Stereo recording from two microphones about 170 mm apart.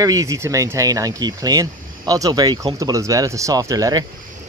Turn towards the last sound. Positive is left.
turn(degrees=-20)  # may be behind; listen again after turning